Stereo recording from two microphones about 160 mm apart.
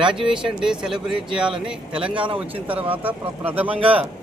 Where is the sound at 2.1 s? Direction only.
35° right (ahead or behind).